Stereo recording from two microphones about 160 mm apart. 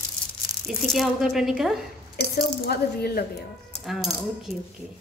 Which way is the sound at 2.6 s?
80° left.